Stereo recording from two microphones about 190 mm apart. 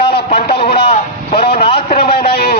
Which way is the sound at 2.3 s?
55° left (ahead or behind).